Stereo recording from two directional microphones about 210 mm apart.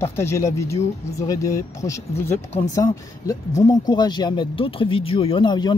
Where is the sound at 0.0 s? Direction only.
10° left (ahead or behind).